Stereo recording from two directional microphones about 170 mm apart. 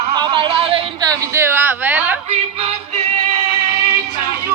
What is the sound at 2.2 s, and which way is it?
Music, 40° right (ahead or behind).